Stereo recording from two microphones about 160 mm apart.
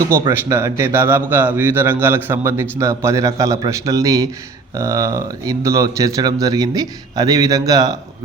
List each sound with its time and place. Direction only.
0.0 s speech: 20° right (ahead or behind)